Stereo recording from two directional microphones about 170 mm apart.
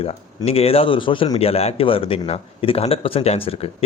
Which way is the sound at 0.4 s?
35° left (ahead or behind).